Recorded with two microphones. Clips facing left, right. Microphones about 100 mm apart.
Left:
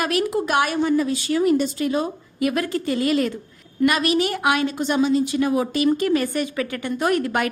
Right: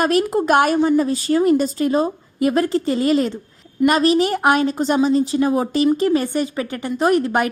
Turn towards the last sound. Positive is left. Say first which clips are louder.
# right 4 dB
turn(degrees=-25)  # may be behind; listen again after turning